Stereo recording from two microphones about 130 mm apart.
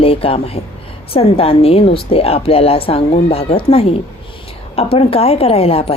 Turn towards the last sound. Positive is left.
turn(degrees=50)  # may be behind; listen again after turning